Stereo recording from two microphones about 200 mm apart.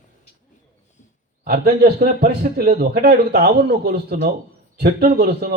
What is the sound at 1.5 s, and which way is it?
A man's voice, 50° right (ahead or behind).